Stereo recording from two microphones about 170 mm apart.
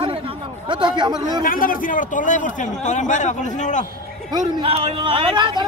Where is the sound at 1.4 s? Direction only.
55° left (ahead or behind).